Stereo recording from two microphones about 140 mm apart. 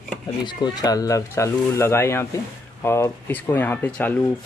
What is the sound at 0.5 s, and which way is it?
Speech, 30° left (ahead or behind).